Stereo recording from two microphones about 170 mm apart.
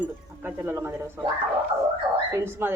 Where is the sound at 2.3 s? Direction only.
15° right (ahead or behind).